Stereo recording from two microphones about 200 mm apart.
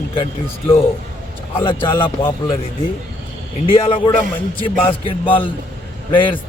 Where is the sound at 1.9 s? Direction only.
10° left (ahead or behind).